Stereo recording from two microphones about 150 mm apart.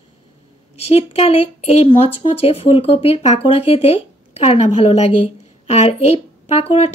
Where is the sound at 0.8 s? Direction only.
40° left (ahead or behind).